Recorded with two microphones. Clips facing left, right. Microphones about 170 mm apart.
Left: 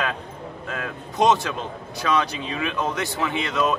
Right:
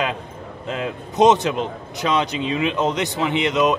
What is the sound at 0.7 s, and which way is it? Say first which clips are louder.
A man's voice: right 7 dB; 20° right (ahead or behind).